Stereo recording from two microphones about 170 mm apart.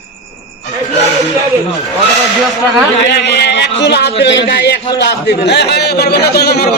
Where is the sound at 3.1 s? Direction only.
80° left.